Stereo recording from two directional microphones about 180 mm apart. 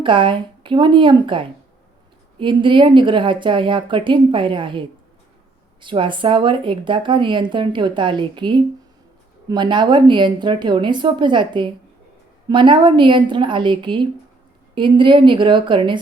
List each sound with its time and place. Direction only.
0.0 s speech: 25° right (ahead or behind)
5.8 s speech: 25° right (ahead or behind)